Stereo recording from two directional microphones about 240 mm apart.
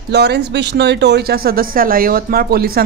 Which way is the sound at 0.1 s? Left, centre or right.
Right.